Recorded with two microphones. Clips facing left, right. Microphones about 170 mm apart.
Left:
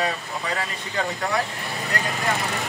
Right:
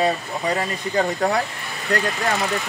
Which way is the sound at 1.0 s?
40° right (ahead or behind).